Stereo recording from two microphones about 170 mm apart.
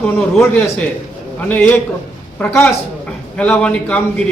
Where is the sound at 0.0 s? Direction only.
5° left (ahead or behind).